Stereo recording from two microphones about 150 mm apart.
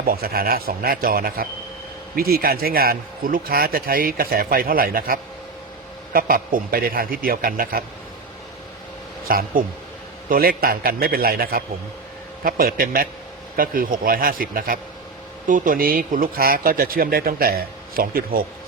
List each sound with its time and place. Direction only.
0.0 s a man's voice: 85° right
9.2 s a man's voice: 75° right (ahead or behind)